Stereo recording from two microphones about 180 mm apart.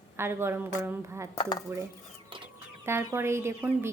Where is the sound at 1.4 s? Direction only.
25° left (ahead or behind).